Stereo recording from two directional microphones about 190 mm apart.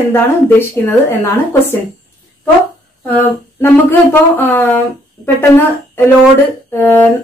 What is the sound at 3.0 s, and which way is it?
Speech, 10° left (ahead or behind).